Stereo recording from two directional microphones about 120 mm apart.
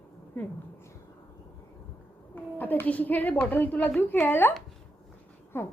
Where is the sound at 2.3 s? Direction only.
15° left (ahead or behind).